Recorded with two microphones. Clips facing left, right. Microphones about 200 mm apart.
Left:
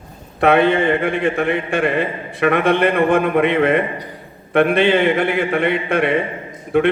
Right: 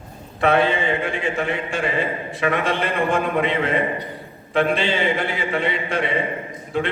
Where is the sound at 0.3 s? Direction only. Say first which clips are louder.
Left 5 dB; 60° left (ahead or behind).